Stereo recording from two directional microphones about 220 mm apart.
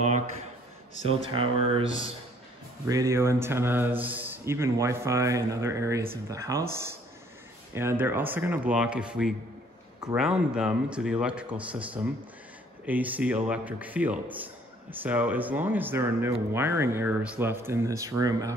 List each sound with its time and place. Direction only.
1.0 s speech: 25° right (ahead or behind)
2.9 s speech: 15° right (ahead or behind)
7.7 s speech: 10° right (ahead or behind)